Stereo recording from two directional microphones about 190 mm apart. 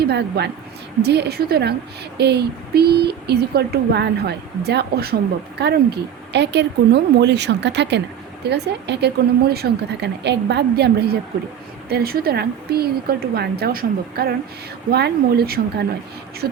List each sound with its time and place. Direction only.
0.0 s speech: 60° right (ahead or behind)